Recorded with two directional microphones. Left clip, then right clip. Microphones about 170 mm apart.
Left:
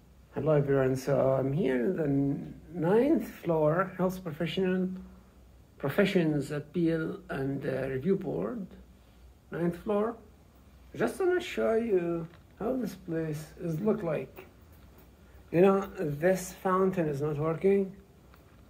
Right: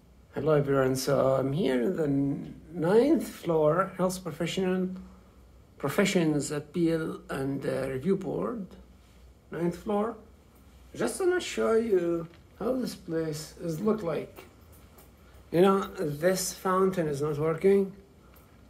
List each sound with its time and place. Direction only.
0.3 s speech: 10° right (ahead or behind)
9.5 s speech: 5° left (ahead or behind)
15.5 s speech: 10° right (ahead or behind)
17.3 s speech: 20° right (ahead or behind)